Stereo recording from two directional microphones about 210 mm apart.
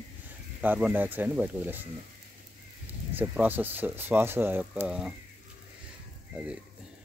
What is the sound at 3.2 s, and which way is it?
Speech, 10° right (ahead or behind).